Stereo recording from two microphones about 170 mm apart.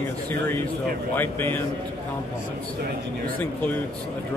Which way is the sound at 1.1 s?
10° left (ahead or behind).